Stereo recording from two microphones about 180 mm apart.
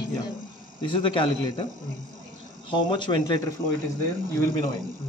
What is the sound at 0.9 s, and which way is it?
Speech, 25° left (ahead or behind).